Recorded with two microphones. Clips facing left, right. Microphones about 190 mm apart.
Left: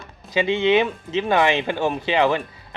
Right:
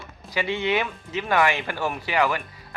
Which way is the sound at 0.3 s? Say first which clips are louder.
Left 6 dB; 20° left (ahead or behind).